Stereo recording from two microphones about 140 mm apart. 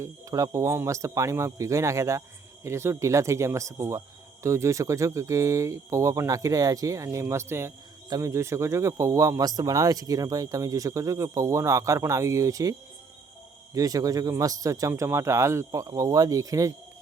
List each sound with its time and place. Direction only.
0.0 s speech: 25° right (ahead or behind)
13.7 s speech: 25° right (ahead or behind)